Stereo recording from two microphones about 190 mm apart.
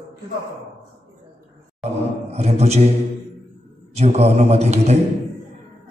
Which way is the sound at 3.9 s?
35° right (ahead or behind).